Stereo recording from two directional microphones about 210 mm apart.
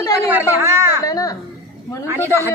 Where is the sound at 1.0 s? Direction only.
15° left (ahead or behind).